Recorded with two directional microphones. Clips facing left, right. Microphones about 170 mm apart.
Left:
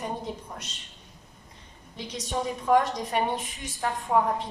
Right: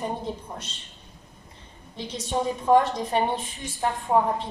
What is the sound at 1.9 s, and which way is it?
A woman's voice, 30° right (ahead or behind).